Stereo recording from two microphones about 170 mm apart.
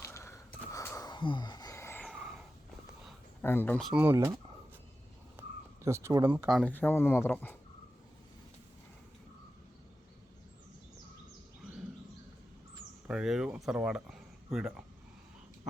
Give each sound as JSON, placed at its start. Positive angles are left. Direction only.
{"t": 0.0, "sound": "a sound", "side_deg": 15}
{"t": 2.0, "sound": "snort", "side_deg": 0}
{"t": 3.4, "sound": "speech", "side_deg": 10}
{"t": 4.0, "sound": "speech", "side_deg": -15}
{"t": 5.4, "sound": "a sound", "side_deg": -15}
{"t": 6.4, "sound": "speech", "side_deg": 0}
{"t": 6.7, "sound": "speech", "side_deg": 10}
{"t": 13.1, "sound": "speech", "side_deg": -5}